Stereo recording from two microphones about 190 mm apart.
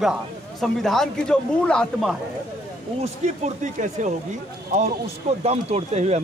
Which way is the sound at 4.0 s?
40° right (ahead or behind).